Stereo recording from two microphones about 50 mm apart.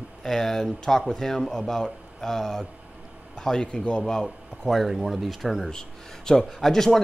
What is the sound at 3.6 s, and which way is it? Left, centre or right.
Speech, left.